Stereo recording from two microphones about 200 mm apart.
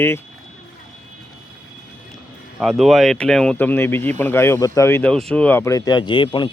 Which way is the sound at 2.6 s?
Centre (ahead or behind).